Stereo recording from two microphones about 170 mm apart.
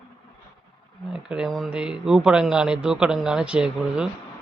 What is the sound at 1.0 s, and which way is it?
Speech, 5° right (ahead or behind).